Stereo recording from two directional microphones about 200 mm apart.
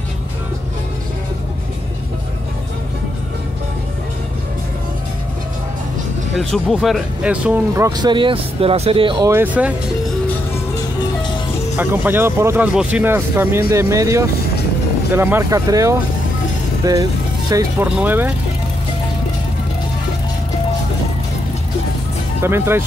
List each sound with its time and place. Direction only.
6.3 s speech: centre (ahead or behind)
11.7 s speech: 10° right (ahead or behind)
22.4 s speech: 10° right (ahead or behind)